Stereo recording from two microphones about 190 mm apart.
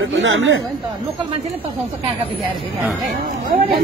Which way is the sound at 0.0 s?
90° right.